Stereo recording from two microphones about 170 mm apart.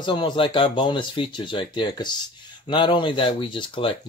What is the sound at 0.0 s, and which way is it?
Speech, 30° left (ahead or behind).